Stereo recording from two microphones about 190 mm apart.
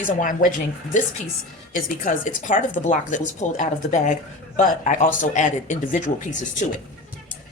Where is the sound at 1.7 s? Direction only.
45° left (ahead or behind).